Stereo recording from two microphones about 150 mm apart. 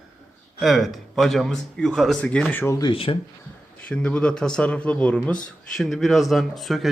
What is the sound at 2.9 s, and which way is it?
Speech, 35° left (ahead or behind).